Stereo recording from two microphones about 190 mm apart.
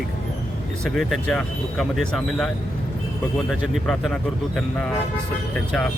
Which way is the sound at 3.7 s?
Centre (ahead or behind).